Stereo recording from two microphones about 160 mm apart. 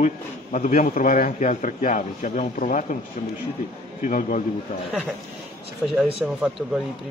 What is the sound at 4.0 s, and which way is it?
Speech, 55° left (ahead or behind).